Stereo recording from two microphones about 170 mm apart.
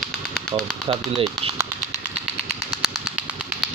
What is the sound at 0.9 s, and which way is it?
Speech, 30° right (ahead or behind).